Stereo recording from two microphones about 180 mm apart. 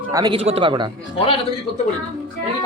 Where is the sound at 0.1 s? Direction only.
25° right (ahead or behind).